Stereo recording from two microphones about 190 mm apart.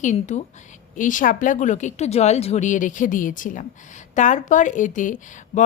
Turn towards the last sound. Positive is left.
turn(degrees=45)  # may be behind; listen again after turning